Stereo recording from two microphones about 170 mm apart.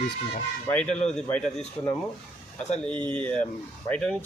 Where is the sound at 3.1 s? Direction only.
10° left (ahead or behind).